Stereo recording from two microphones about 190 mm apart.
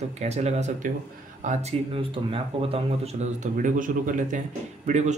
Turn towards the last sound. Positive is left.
turn(degrees=-35)  # may be behind; listen again after turning